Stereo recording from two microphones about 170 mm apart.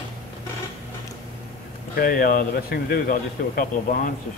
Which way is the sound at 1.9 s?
60° left (ahead or behind).